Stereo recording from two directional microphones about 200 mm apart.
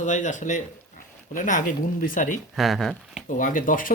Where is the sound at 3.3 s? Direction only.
40° left (ahead or behind).